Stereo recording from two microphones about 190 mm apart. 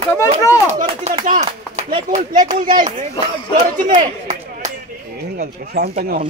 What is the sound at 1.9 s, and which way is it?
Speech, 40° right (ahead or behind).